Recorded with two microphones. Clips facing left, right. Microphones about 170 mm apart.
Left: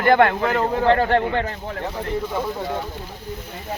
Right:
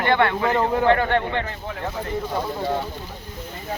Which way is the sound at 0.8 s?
35° left (ahead or behind).